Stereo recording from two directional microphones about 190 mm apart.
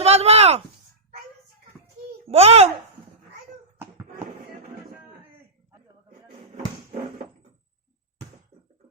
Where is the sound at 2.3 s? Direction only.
30° right (ahead or behind).